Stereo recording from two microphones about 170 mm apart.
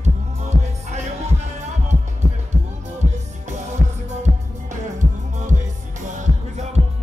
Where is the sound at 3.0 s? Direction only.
45° right (ahead or behind).